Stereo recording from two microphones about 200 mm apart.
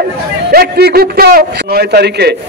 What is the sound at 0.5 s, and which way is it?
A man's voice, 50° right (ahead or behind).